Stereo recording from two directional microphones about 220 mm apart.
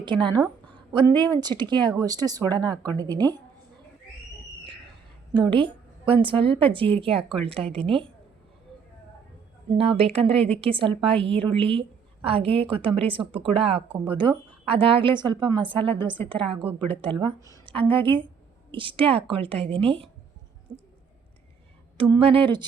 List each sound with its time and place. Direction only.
0.0 s a woman's voice: 20° right (ahead or behind)
5.3 s a woman's voice: 20° right (ahead or behind)
9.7 s a woman's voice: 25° right (ahead or behind)
20.7 s a sound: 25° right (ahead or behind)
21.9 s a woman's voice: 20° right (ahead or behind)